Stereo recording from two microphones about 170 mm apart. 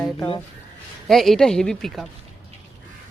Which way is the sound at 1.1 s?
Centre (ahead or behind).